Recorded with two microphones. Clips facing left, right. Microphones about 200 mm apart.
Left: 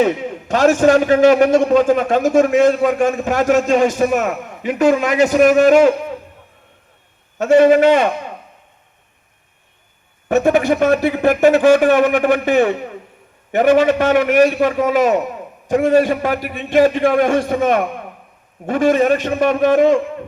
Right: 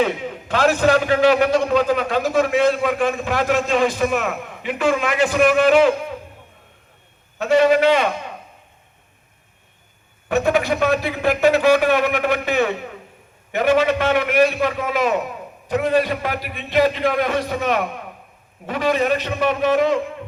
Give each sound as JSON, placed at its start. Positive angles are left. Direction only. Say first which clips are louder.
{"t": 0.0, "sound": "a man's voice", "louder": "left 4 dB", "side_deg": 45}
{"t": 7.3, "sound": "a man's voice", "louder": "left 5 dB", "side_deg": 50}
{"t": 10.2, "sound": "a man's voice", "louder": "left 5 dB", "side_deg": 45}